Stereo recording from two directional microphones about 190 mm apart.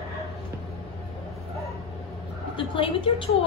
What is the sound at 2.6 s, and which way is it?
Speech, 25° left (ahead or behind).